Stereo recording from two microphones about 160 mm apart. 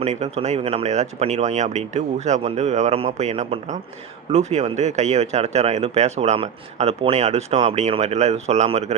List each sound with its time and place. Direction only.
0.0 s speech: 45° right (ahead or behind)